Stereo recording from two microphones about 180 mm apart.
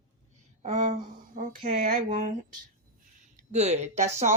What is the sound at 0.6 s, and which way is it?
Speech, 40° right (ahead or behind).